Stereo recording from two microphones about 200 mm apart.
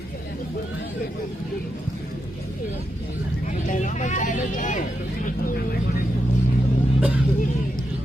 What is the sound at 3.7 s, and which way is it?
Vehicle, 40° left (ahead or behind).